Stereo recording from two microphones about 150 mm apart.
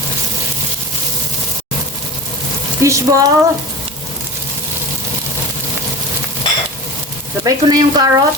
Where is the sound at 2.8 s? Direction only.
20° right (ahead or behind).